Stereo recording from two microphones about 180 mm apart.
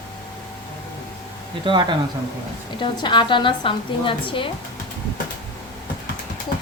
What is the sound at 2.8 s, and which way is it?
A woman's voice, 25° left (ahead or behind).